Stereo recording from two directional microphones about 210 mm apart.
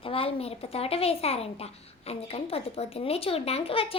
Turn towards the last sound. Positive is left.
turn(degrees=25)  # may be behind; listen again after turning